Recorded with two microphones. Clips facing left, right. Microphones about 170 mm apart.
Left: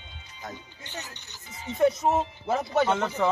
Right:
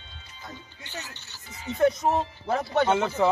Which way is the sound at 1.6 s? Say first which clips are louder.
Even; centre (ahead or behind).